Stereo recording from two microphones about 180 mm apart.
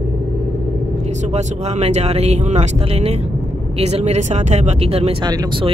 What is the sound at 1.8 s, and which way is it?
Speech, 35° right (ahead or behind).